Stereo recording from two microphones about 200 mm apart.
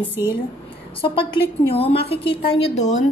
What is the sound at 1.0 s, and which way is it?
A woman's voice, 25° left (ahead or behind).